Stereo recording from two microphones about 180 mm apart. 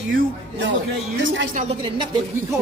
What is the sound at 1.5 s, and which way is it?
Speech, 40° right (ahead or behind).